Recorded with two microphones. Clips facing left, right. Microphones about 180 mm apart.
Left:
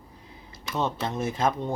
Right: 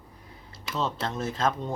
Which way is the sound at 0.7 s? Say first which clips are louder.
Left 2 dB; 15° left (ahead or behind).